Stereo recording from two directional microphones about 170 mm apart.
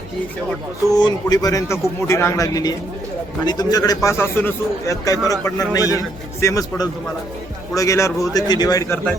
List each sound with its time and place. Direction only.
0.9 s a man's voice: 25° left (ahead or behind)